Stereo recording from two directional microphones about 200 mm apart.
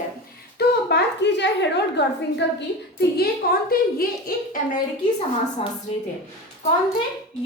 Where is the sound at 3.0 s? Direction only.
50° left (ahead or behind).